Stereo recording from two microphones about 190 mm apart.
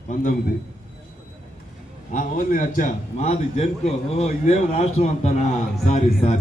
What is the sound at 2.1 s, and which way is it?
A man's voice, 45° left (ahead or behind).